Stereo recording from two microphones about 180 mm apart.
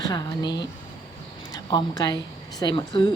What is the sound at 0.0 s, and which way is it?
A woman's voice, 20° left (ahead or behind).